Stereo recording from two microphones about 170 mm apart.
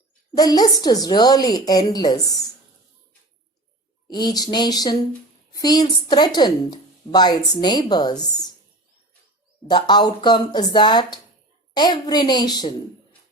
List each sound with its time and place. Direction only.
0.3 s a woman's voice: 25° left (ahead or behind)
4.1 s a woman's voice: 25° left (ahead or behind)
9.6 s a woman's voice: 25° left (ahead or behind)